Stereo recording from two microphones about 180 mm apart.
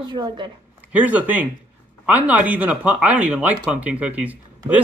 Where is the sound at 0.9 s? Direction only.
10° right (ahead or behind).